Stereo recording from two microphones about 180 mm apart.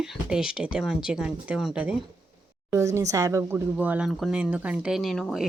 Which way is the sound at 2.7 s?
15° right (ahead or behind).